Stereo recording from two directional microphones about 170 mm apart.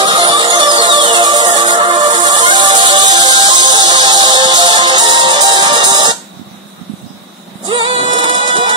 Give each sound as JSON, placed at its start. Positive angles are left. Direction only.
{"t": 0.0, "sound": "music", "side_deg": -25}
{"t": 7.6, "sound": "music", "side_deg": -25}